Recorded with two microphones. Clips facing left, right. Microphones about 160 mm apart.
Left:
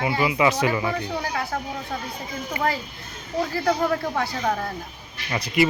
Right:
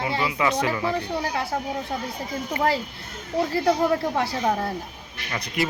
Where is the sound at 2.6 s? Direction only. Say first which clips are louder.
Right 1 dB; 10° left (ahead or behind).